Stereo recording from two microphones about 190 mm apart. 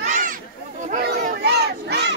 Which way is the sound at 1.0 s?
55° right (ahead or behind).